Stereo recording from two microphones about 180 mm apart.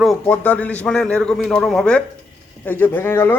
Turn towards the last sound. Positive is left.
turn(degrees=10)  # may be behind; listen again after turning